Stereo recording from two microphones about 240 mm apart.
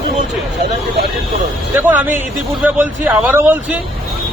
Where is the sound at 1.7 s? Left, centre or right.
Centre.